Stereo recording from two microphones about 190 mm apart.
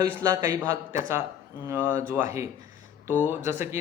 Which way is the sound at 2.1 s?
15° right (ahead or behind).